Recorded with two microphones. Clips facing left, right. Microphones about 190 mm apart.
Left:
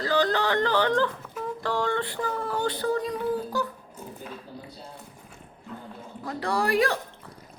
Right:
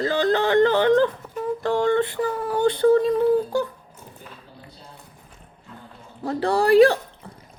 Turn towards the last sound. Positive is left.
turn(degrees=-30)  # may be behind; listen again after turning